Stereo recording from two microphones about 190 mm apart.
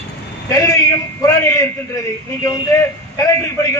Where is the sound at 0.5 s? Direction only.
20° left (ahead or behind).